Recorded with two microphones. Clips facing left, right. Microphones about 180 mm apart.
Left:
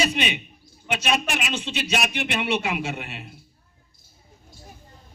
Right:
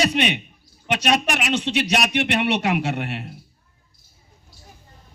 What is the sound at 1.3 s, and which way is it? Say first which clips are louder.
A man's voice: right 6 dB; 60° right (ahead or behind).